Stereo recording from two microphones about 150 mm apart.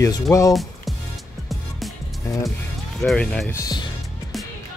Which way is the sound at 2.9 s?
5° left (ahead or behind).